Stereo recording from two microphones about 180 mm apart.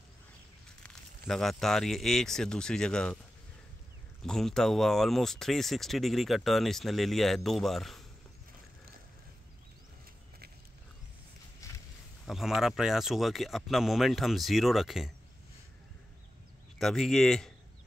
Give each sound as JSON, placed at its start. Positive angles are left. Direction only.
{"t": 0.8, "sound": "speech", "side_deg": 0}
{"t": 4.2, "sound": "speech", "side_deg": 0}
{"t": 11.6, "sound": "a sound", "side_deg": 15}
{"t": 12.3, "sound": "speech", "side_deg": 0}
{"t": 16.7, "sound": "speech", "side_deg": 0}